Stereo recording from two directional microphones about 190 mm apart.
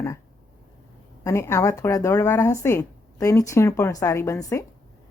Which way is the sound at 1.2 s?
15° left (ahead or behind).